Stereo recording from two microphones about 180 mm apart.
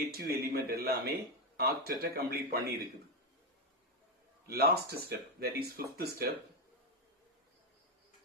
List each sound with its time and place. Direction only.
0.1 s speech: 60° right (ahead or behind)
4.4 s speech: 60° right (ahead or behind)